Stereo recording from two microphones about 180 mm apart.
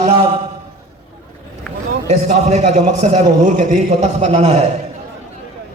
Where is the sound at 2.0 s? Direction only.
40° right (ahead or behind).